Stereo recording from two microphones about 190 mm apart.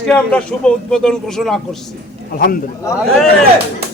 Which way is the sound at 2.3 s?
50° left (ahead or behind).